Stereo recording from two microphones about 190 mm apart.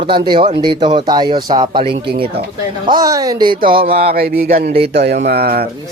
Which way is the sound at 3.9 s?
55° right (ahead or behind).